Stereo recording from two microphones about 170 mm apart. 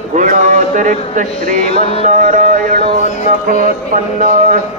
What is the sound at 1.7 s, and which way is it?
Mantra, 35° left (ahead or behind).